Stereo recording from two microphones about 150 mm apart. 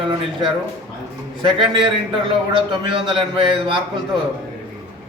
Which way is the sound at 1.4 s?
35° right (ahead or behind).